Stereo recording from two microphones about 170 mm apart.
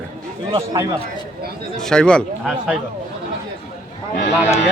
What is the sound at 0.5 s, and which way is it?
Speech, 25° right (ahead or behind).